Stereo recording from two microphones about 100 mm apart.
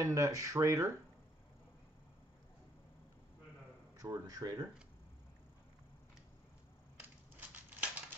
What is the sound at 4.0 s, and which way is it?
Speech, 35° right (ahead or behind).